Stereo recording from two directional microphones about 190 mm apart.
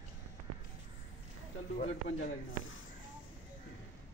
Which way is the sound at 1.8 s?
45° left (ahead or behind).